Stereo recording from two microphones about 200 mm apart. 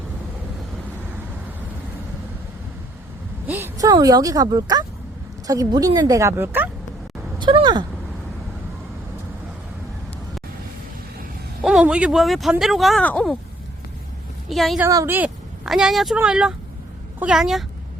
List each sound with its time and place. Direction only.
3.4 s a woman's voice: 10° right (ahead or behind)
7.3 s speech: 25° right (ahead or behind)
11.6 s speech: 5° right (ahead or behind)
14.5 s speech: centre (ahead or behind)
14.8 s speech: 15° right (ahead or behind)